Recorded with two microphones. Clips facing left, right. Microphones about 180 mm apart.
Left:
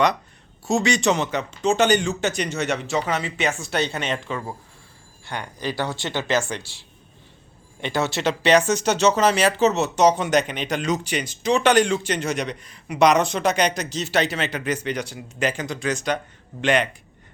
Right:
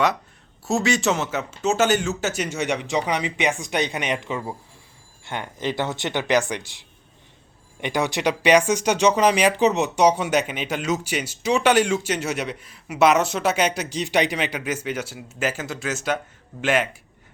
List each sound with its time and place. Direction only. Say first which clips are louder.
0.7 s speech: left 1 dB; centre (ahead or behind)